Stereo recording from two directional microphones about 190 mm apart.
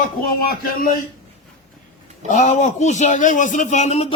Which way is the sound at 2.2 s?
40° left (ahead or behind).